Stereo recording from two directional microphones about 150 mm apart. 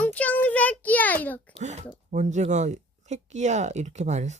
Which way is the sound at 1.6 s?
50° right (ahead or behind).